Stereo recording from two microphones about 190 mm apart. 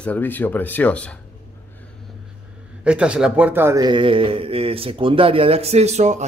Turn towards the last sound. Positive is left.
turn(degrees=-35)  # may be behind; listen again after turning